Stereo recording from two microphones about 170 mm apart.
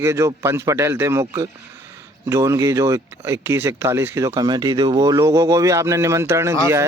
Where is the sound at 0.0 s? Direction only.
15° right (ahead or behind).